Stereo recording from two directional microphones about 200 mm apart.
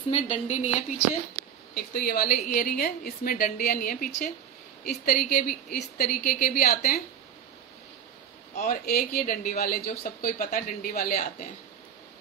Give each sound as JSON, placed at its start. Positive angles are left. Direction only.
{"t": 0.1, "sound": "speech", "side_deg": 35}
{"t": 1.8, "sound": "speech", "side_deg": 50}
{"t": 8.5, "sound": "speech", "side_deg": 45}